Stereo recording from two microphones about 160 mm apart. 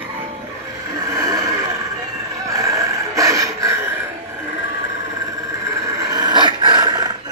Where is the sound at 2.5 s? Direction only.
20° right (ahead or behind).